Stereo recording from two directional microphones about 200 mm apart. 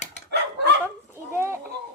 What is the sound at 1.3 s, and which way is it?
Speech, 10° right (ahead or behind).